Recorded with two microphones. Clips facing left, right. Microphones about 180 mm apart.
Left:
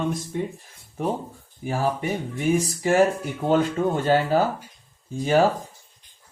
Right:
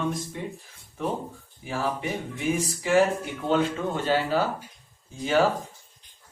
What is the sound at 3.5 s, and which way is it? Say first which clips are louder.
Speech: left 4 dB; 45° left (ahead or behind).